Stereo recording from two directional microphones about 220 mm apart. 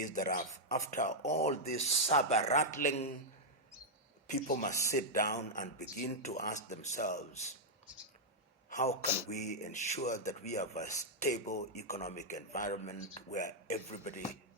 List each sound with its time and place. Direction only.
0.0 s speech: 40° left (ahead or behind)
4.3 s speech: 35° left (ahead or behind)
4.7 s speech: 15° left (ahead or behind)
5.1 s speech: 35° left (ahead or behind)
8.7 s a man's voice: 30° left (ahead or behind)